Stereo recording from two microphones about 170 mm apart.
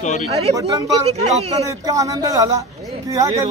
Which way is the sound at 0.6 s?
35° right (ahead or behind).